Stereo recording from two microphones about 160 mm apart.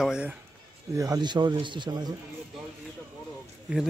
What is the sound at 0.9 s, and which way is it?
Speech, 25° right (ahead or behind).